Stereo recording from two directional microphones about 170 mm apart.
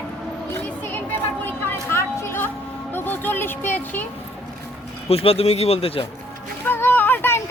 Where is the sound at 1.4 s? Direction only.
15° left (ahead or behind).